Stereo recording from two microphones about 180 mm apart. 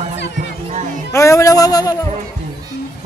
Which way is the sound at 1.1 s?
15° left (ahead or behind).